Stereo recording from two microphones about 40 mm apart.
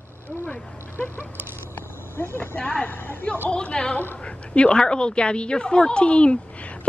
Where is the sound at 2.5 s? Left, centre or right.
Left.